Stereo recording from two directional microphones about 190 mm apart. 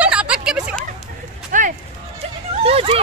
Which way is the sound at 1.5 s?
45° right (ahead or behind).